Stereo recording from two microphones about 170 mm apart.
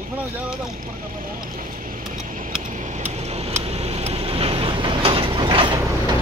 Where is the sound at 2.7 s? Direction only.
45° right (ahead or behind).